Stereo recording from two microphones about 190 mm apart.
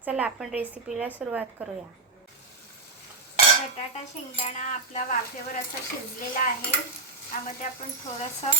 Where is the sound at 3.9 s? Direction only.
35° left (ahead or behind).